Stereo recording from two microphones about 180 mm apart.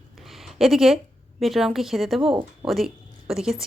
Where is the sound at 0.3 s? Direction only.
Centre (ahead or behind).